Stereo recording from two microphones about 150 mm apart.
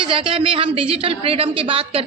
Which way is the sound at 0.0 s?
35° right (ahead or behind).